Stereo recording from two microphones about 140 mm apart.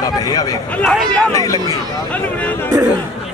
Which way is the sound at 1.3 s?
25° left (ahead or behind).